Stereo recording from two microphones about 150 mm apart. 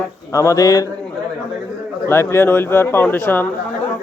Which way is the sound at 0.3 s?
20° left (ahead or behind).